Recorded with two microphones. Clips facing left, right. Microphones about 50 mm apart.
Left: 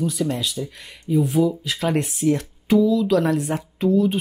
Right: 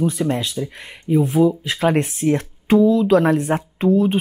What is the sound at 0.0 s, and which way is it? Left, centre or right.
Speech, right.